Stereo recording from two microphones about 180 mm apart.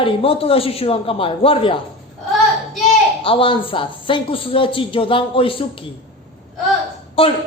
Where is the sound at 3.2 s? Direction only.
30° left (ahead or behind).